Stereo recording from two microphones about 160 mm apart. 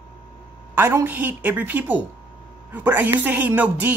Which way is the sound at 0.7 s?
15° right (ahead or behind).